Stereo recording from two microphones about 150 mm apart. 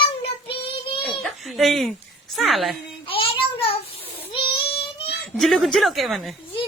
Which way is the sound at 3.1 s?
40° left (ahead or behind).